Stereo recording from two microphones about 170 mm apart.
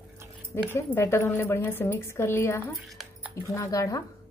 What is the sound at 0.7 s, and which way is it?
A woman's voice, 15° left (ahead or behind).